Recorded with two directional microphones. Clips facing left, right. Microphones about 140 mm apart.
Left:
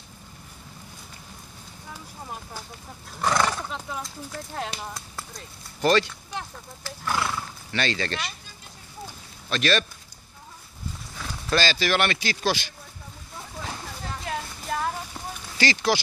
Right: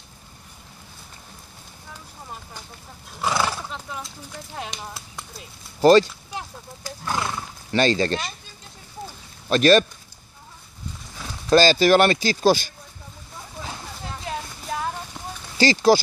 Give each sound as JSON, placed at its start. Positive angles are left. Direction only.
{"t": 3.2, "sound": "speech", "side_deg": -5}
{"t": 5.8, "sound": "speech", "side_deg": -35}
{"t": 6.3, "sound": "speech", "side_deg": -20}
{"t": 7.7, "sound": "speech", "side_deg": -40}
{"t": 9.5, "sound": "speech", "side_deg": -40}
{"t": 11.5, "sound": "speech", "side_deg": -40}
{"t": 15.5, "sound": "speech", "side_deg": -35}